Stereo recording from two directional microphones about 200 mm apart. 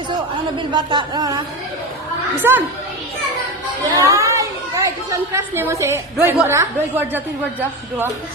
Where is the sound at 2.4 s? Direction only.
10° right (ahead or behind).